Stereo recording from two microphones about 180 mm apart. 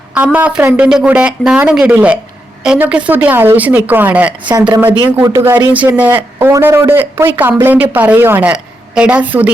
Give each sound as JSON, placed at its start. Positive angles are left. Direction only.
{"t": 0.1, "sound": "speech", "side_deg": -5}
{"t": 4.4, "sound": "speech", "side_deg": -25}
{"t": 5.7, "sound": "speech", "side_deg": -10}